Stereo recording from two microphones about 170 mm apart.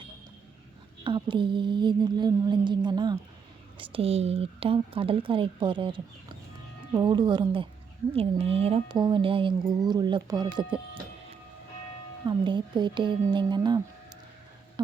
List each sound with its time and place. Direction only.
1.0 s speech: 30° right (ahead or behind)
12.2 s speech: 25° right (ahead or behind)